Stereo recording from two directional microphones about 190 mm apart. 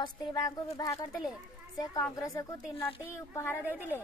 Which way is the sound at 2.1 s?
15° left (ahead or behind).